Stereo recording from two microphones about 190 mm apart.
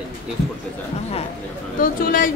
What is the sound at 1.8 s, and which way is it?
Speech, 50° left (ahead or behind).